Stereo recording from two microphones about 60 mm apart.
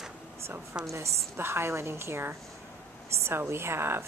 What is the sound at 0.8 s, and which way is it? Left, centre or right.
A woman's voice, right.